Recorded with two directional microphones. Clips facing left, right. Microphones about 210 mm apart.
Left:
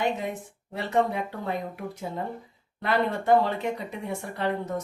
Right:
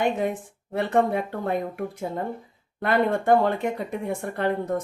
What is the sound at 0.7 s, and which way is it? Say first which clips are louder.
Speech: right 4 dB; 55° right (ahead or behind).